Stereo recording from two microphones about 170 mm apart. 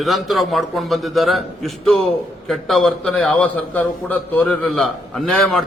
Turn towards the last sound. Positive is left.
turn(degrees=0)  # may be behind; listen again after turning